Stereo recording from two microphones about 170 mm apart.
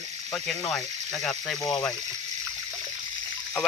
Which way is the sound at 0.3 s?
Centre (ahead or behind).